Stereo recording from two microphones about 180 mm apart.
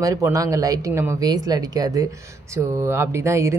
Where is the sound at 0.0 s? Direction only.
20° right (ahead or behind).